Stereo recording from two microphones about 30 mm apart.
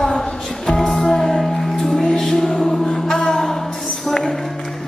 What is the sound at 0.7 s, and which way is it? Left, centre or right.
Music, centre.